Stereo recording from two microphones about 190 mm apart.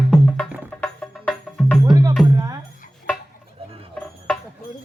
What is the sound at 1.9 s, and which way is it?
Music, 20° right (ahead or behind).